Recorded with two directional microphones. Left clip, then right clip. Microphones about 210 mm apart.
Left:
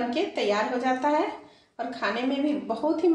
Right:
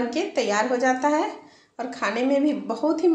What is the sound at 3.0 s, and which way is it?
Speech, 40° right (ahead or behind).